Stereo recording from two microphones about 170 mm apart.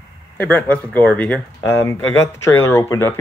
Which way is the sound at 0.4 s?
10° left (ahead or behind).